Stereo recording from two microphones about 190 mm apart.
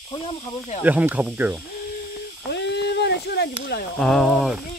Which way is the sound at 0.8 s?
10° right (ahead or behind).